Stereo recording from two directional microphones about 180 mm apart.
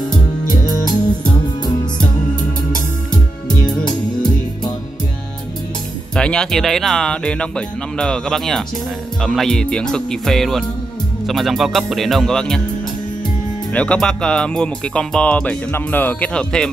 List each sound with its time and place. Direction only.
0.1 s music: 25° left (ahead or behind)
3.4 s music: 5° left (ahead or behind)
6.1 s speech: 5° left (ahead or behind)
13.7 s speech: 5° left (ahead or behind)